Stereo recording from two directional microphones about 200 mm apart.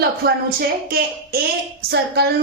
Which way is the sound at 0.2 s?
50° right (ahead or behind).